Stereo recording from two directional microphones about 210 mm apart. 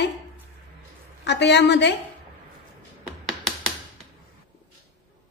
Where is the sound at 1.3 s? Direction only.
55° left (ahead or behind).